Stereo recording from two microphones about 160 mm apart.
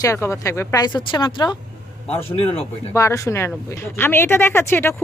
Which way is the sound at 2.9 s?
20° left (ahead or behind).